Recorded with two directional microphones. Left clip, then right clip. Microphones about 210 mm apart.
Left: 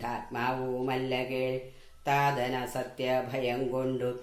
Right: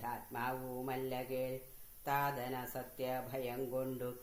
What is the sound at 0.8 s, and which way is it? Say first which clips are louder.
Speech: left 7 dB; 40° right (ahead or behind).